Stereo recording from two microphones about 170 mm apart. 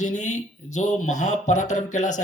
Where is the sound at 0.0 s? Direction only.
45° left (ahead or behind).